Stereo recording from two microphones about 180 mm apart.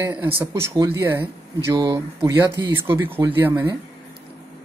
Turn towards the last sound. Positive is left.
turn(degrees=-10)  # may be behind; listen again after turning